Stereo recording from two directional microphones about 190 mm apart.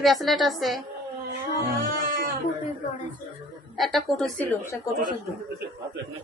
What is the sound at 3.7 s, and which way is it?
A woman's voice, centre (ahead or behind).